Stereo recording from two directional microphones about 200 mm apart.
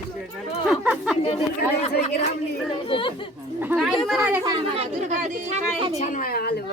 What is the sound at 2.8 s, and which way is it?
Speech, 25° left (ahead or behind).